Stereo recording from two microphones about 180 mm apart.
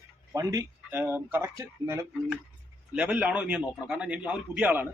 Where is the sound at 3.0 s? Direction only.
5° right (ahead or behind).